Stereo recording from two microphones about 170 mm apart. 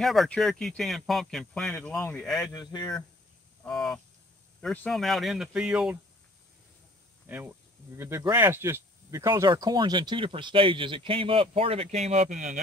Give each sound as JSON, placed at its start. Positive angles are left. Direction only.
{"t": 0.0, "sound": "speech", "side_deg": 0}
{"t": 2.5, "sound": "speech", "side_deg": 25}
{"t": 3.6, "sound": "speech", "side_deg": 5}
{"t": 7.2, "sound": "speech", "side_deg": -10}